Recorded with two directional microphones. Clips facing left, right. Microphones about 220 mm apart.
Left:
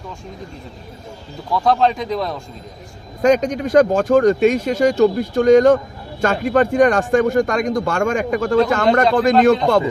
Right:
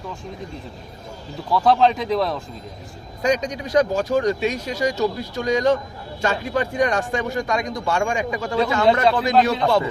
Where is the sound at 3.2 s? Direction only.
50° left (ahead or behind).